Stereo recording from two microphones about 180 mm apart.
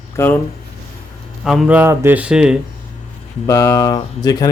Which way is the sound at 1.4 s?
Centre (ahead or behind).